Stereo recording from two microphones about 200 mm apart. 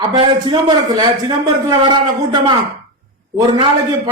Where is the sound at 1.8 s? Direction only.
20° right (ahead or behind).